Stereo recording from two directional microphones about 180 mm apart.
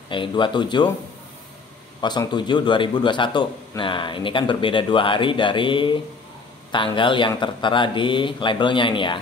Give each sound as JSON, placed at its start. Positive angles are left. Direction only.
{"t": 0.1, "sound": "a man's voice", "side_deg": 25}
{"t": 2.0, "sound": "a man's voice", "side_deg": 25}